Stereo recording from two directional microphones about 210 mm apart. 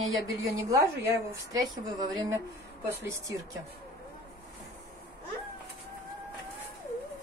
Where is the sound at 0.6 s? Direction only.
15° right (ahead or behind).